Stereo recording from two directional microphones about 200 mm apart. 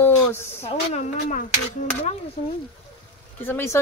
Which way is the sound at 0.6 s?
40° left (ahead or behind).